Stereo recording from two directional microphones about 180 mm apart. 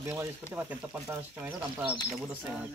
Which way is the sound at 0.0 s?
15° right (ahead or behind).